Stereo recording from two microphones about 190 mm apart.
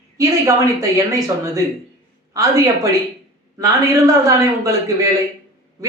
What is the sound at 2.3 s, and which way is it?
Speech, 20° right (ahead or behind).